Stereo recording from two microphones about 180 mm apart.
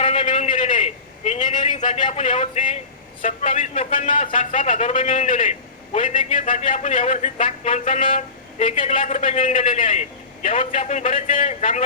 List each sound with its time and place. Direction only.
0.0 s a sound: 40° left (ahead or behind)
1.8 s a man's voice: 45° left (ahead or behind)
4.5 s a man's voice: 40° left (ahead or behind)
5.1 s a man's voice: 45° left (ahead or behind)
9.0 s a man's voice: 40° left (ahead or behind)